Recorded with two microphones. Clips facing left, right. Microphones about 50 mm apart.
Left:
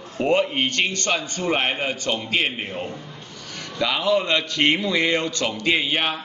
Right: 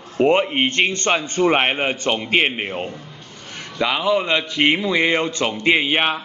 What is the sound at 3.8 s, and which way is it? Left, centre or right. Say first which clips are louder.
A man's voice: right 2 dB; centre.